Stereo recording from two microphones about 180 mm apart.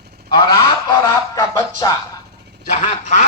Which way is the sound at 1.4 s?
20° left (ahead or behind).